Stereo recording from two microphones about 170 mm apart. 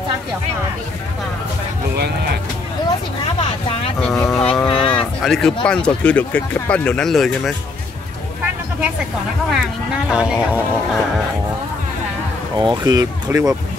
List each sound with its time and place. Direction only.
4.0 s speech: 5° left (ahead or behind)
4.6 s a sound: 30° left (ahead or behind)
5.2 s speech: centre (ahead or behind)
9.5 s speech: 5° right (ahead or behind)
12.5 s speech: 25° right (ahead or behind)